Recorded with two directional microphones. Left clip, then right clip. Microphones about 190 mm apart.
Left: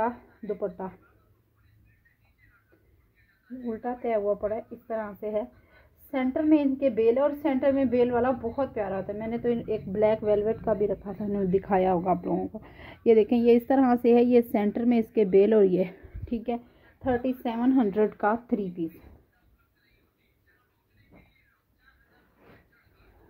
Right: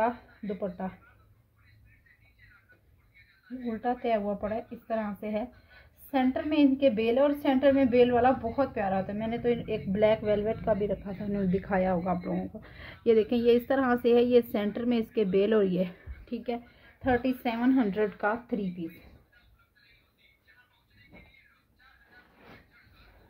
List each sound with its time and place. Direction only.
0.6 s a woman's voice: 35° left (ahead or behind)
3.6 s a woman's voice: 30° left (ahead or behind); by 18.9 s 45° left (ahead or behind)